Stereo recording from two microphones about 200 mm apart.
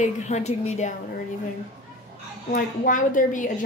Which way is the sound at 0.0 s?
35° left (ahead or behind).